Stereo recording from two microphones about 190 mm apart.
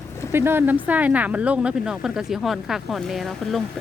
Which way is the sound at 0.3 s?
10° right (ahead or behind).